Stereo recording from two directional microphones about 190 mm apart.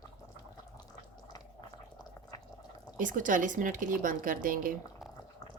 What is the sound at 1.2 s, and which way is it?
Boiling, 20° left (ahead or behind).